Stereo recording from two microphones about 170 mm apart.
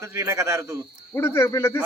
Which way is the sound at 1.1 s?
15° left (ahead or behind).